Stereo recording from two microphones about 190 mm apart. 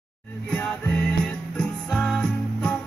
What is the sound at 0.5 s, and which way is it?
Music, 5° left (ahead or behind).